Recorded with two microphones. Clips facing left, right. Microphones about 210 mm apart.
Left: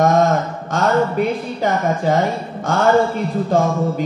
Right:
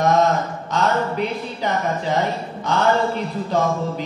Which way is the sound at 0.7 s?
50° left (ahead or behind).